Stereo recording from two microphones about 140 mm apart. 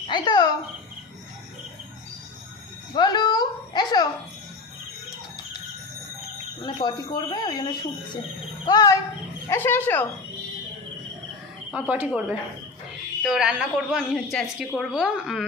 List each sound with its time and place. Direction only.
0.1 s a sound: 30° left (ahead or behind)
2.9 s music: 30° left (ahead or behind)
6.7 s speech: 30° left (ahead or behind)
9.5 s speech: 15° left (ahead or behind)
11.7 s a woman's voice: 10° right (ahead or behind)